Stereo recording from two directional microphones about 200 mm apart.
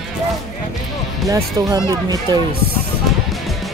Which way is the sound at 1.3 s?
15° right (ahead or behind).